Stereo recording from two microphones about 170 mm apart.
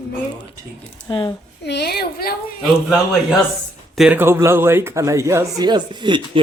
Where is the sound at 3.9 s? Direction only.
Centre (ahead or behind).